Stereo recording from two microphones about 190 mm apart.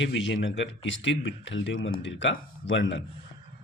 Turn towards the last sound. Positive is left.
turn(degrees=75)  # may be behind; listen again after turning